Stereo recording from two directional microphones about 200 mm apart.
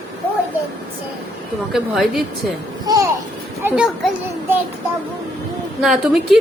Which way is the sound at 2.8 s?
15° right (ahead or behind).